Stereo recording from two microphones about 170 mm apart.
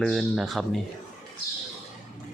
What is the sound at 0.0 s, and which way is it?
Speech, centre (ahead or behind).